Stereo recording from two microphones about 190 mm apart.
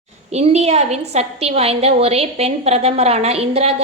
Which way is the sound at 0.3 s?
35° right (ahead or behind).